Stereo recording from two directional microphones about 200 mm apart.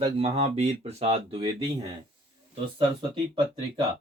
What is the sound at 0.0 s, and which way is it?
Speech, 25° right (ahead or behind).